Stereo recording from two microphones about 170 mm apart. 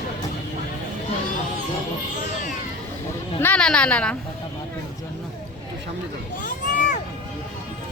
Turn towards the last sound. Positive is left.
turn(degrees=50)  # may be behind; listen again after turning